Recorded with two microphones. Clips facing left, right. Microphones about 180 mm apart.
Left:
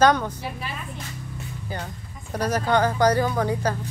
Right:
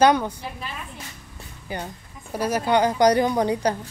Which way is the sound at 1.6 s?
15° right (ahead or behind).